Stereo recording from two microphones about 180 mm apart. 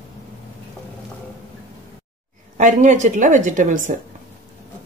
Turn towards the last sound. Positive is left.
turn(degrees=-45)  # may be behind; listen again after turning